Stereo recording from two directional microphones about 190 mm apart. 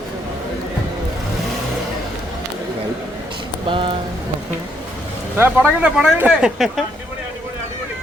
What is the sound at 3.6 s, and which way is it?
Rain on surface, 25° right (ahead or behind).